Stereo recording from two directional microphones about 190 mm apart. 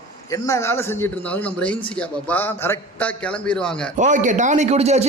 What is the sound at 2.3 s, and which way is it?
Speech, 10° left (ahead or behind).